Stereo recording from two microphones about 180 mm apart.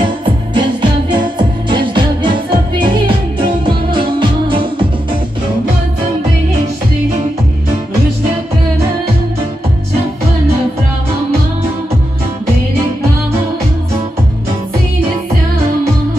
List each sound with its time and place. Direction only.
0.0 s music: 25° right (ahead or behind)
1.7 s music: 25° right (ahead or behind)